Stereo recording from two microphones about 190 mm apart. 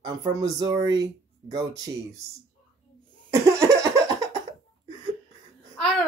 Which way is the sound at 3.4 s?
15° right (ahead or behind).